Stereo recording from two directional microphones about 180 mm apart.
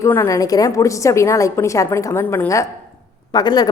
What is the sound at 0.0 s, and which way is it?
A woman's voice, 15° left (ahead or behind).